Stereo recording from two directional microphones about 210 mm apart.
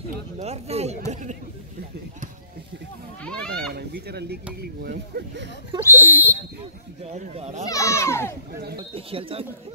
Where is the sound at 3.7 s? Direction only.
50° right (ahead or behind).